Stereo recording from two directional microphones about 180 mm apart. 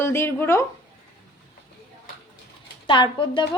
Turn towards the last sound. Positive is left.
turn(degrees=25)  # may be behind; listen again after turning